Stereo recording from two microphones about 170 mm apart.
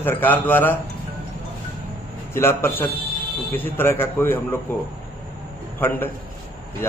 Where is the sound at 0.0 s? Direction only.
10° left (ahead or behind).